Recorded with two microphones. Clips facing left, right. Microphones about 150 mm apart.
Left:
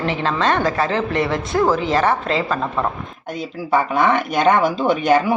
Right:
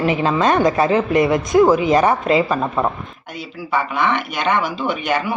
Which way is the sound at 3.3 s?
40° left (ahead or behind).